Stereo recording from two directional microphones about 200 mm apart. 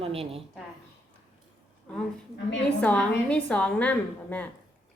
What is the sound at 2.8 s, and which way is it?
A woman's voice, 5° left (ahead or behind).